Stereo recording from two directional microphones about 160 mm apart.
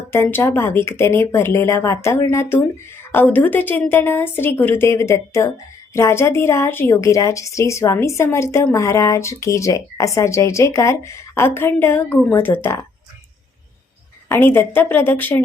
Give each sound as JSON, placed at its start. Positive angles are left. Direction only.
{"t": 0.1, "sound": "a woman's voice", "side_deg": 15}
{"t": 14.3, "sound": "a woman's voice", "side_deg": 15}